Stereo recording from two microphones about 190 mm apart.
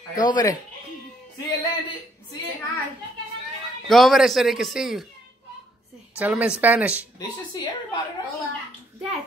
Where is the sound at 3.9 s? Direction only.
Centre (ahead or behind).